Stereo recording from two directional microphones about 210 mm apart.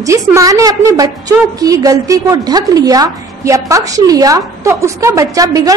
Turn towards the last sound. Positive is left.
turn(degrees=-15)  # may be behind; listen again after turning